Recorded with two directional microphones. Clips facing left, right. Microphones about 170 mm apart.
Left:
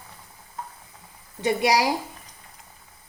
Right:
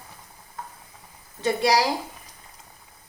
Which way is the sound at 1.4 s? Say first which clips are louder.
Even; 15° left (ahead or behind).